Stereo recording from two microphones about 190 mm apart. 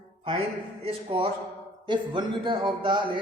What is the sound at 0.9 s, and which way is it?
A man's voice, 30° right (ahead or behind).